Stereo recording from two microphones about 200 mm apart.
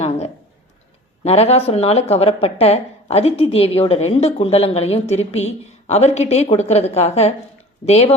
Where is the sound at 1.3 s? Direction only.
30° left (ahead or behind).